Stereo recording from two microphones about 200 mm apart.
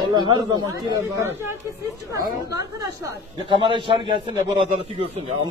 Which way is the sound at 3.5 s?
25° right (ahead or behind).